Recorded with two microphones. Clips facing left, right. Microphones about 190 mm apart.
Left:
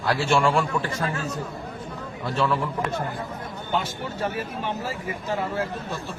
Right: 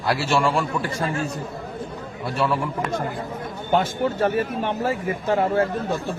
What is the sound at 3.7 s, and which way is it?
Speech, 55° right (ahead or behind).